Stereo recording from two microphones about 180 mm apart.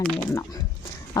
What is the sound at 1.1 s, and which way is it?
Chicken, 20° left (ahead or behind).